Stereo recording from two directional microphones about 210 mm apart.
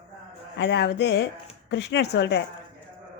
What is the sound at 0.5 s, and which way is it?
A woman's voice, 55° left (ahead or behind).